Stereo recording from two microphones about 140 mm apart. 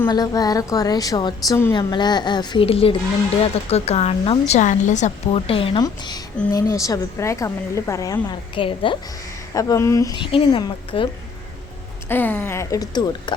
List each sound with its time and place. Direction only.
0.1 s a woman's voice: 30° left (ahead or behind)
2.6 s speech: 40° left (ahead or behind); by 5.4 s 55° left (ahead or behind)
5.5 s a woman's voice: 40° left (ahead or behind)
5.8 s a woman's voice: 30° left (ahead or behind)
8.5 s a woman's voice: 35° left (ahead or behind)
9.6 s a woman's voice: 20° left (ahead or behind)
10.2 s a woman's voice: 35° left (ahead or behind)
12.0 s a woman's voice: 15° left (ahead or behind); by 13.3 s 30° left (ahead or behind)